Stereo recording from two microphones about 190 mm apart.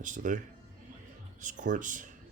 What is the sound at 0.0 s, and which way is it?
Speech, 40° right (ahead or behind).